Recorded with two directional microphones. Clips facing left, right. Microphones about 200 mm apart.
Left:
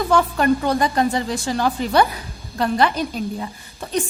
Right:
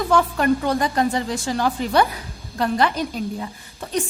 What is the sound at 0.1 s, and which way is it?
A woman's voice, 30° left (ahead or behind).